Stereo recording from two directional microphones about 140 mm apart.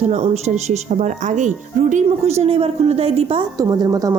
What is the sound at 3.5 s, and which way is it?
Speech, 25° right (ahead or behind).